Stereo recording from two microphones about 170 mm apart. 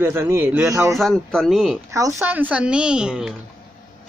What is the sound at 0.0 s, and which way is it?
Speech, 15° right (ahead or behind).